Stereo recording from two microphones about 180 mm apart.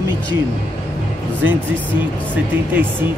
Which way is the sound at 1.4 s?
10° right (ahead or behind).